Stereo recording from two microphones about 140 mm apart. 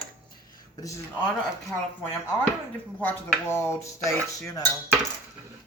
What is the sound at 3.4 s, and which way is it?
Dishes, 20° left (ahead or behind).